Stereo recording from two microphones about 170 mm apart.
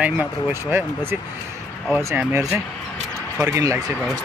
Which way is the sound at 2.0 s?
15° right (ahead or behind).